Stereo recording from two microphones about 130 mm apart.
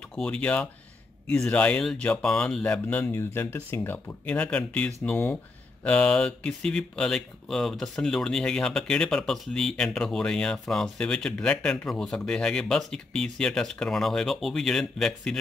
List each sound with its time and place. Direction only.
0.1 s speech: 10° left (ahead or behind)